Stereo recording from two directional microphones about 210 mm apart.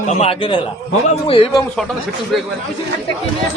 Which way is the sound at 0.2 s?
25° left (ahead or behind).